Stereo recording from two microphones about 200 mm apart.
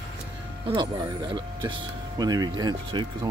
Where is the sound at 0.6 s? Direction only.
20° right (ahead or behind).